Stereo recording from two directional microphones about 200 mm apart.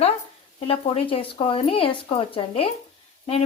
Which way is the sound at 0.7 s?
30° left (ahead or behind).